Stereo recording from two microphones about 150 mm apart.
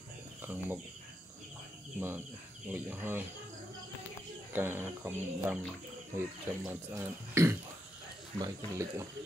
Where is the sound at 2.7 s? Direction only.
15° right (ahead or behind).